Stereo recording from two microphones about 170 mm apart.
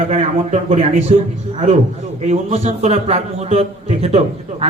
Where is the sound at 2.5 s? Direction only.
40° right (ahead or behind).